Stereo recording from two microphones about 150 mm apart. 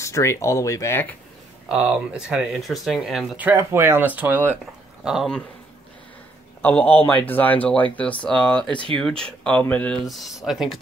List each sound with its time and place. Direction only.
0.0 s speech: 20° left (ahead or behind)
1.7 s speech: 5° right (ahead or behind)
6.6 s speech: 10° left (ahead or behind)
10.0 s speech: centre (ahead or behind)